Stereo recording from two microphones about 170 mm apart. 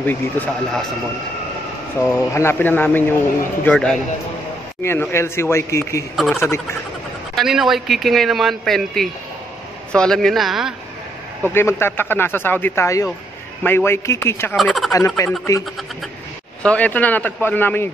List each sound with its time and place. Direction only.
0.0 s speech: 10° left (ahead or behind)
2.0 s a man's voice: 15° left (ahead or behind)
6.1 s a man's voice: centre (ahead or behind)
6.4 s speech: 15° left (ahead or behind)
7.3 s a man's voice: centre (ahead or behind)
11.5 s speech: 15° left (ahead or behind)
14.6 s a man's voice: centre (ahead or behind)
14.9 s speech: 15° left (ahead or behind)
16.6 s speech: 10° left (ahead or behind)